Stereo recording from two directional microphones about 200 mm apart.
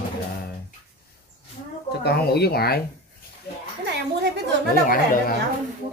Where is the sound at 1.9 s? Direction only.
55° left (ahead or behind).